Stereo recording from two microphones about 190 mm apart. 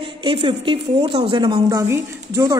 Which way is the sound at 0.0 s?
25° right (ahead or behind).